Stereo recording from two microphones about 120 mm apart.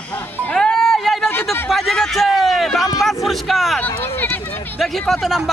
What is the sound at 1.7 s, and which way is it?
A man's voice, centre (ahead or behind).